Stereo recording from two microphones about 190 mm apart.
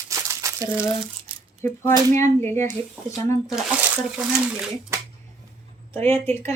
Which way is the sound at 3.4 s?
5° right (ahead or behind).